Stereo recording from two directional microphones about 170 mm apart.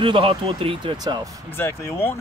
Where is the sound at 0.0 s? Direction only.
30° right (ahead or behind).